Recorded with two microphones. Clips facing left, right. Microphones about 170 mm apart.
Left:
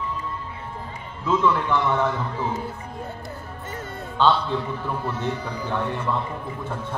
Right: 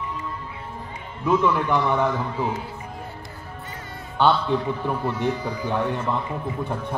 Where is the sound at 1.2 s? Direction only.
15° right (ahead or behind).